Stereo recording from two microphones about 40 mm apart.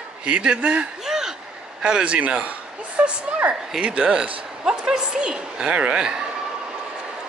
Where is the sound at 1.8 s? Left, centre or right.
Right.